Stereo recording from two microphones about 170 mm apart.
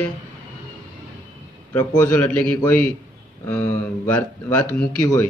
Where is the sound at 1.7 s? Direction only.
10° left (ahead or behind).